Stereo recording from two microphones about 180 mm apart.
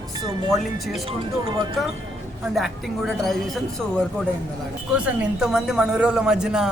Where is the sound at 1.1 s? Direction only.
30° right (ahead or behind).